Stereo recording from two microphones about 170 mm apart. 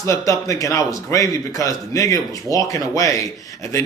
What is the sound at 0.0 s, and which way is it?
Speech, 20° left (ahead or behind).